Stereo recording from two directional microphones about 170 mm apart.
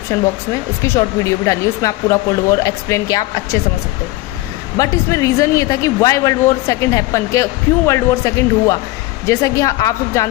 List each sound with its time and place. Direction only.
0.1 s speech: 15° left (ahead or behind)
4.8 s speech: 20° left (ahead or behind)